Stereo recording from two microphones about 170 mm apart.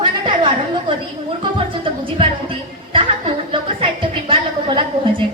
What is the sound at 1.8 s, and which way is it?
Music, 30° right (ahead or behind).